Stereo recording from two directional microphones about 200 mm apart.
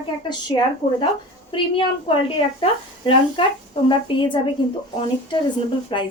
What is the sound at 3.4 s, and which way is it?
Speech, 25° left (ahead or behind).